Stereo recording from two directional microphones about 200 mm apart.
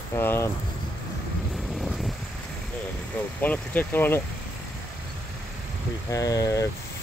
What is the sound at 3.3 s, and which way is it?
Speech, 10° left (ahead or behind).